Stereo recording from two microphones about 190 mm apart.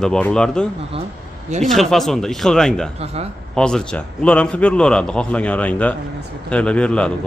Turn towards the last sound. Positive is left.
turn(degrees=5)  # may be behind; listen again after turning